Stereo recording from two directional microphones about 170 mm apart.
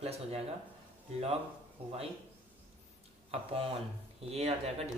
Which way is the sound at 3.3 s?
35° right (ahead or behind).